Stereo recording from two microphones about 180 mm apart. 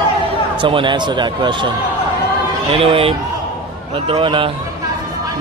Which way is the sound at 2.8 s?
30° right (ahead or behind).